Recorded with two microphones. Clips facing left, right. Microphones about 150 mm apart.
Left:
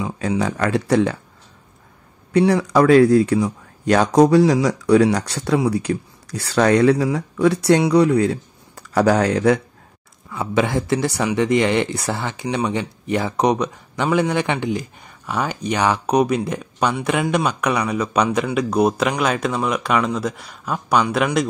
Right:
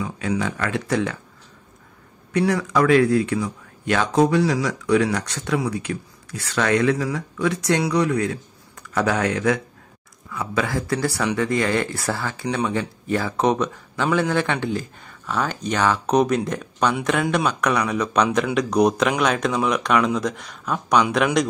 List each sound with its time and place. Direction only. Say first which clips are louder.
0.0 s speech: left 3 dB; 35° left (ahead or behind)
2.3 s speech: left 5 dB; 30° left (ahead or behind)
10.3 s speech: left 4 dB; 25° left (ahead or behind); by 21.5 s centre (ahead or behind)